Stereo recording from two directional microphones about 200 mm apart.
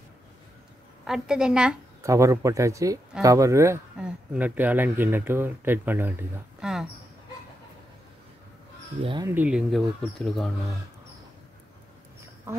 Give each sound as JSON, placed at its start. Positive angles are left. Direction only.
{"t": 1.0, "sound": "speech", "side_deg": -5}
{"t": 2.0, "sound": "speech", "side_deg": -15}
{"t": 6.6, "sound": "mouse", "side_deg": 0}
{"t": 9.0, "sound": "speech", "side_deg": -25}
{"t": 9.3, "sound": "speech", "side_deg": -5}